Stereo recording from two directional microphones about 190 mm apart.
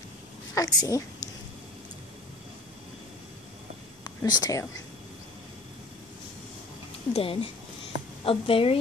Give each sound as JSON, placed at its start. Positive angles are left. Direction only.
{"t": 0.6, "sound": "a woman's voice", "side_deg": 20}
{"t": 4.0, "sound": "speech", "side_deg": 20}
{"t": 7.2, "sound": "a woman's voice", "side_deg": 30}